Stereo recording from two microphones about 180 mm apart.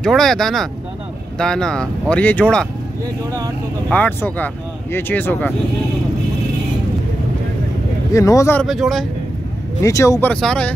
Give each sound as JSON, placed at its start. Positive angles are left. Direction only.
{"t": 0.0, "sound": "speech", "side_deg": 0}
{"t": 3.9, "sound": "speech", "side_deg": 10}
{"t": 8.1, "sound": "speech", "side_deg": 20}
{"t": 8.6, "sound": "speech", "side_deg": 0}
{"t": 9.8, "sound": "speech", "side_deg": 15}
{"t": 10.3, "sound": "speech", "side_deg": 5}